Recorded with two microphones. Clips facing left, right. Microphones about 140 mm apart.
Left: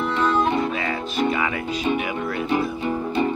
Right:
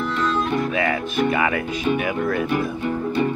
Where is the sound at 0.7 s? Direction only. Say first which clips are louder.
Right 3 dB; 90° right.